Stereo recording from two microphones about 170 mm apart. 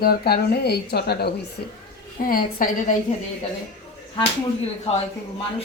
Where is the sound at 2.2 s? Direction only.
55° left (ahead or behind).